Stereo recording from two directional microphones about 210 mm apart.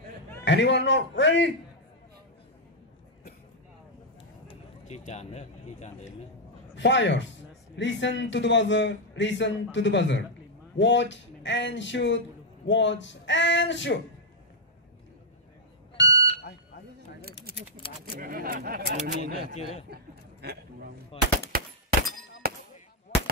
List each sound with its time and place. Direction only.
0.5 s speech: 55° left (ahead or behind)
4.5 s speech: 35° left (ahead or behind)
6.7 s speech: 60° left (ahead or behind)
16.0 s smoke detector: 60° left (ahead or behind)
18.2 s speech: 45° right (ahead or behind)
20.4 s speech: 50° right (ahead or behind)
21.1 s machine gun: 25° left (ahead or behind)
21.5 s a sound: 45° right (ahead or behind)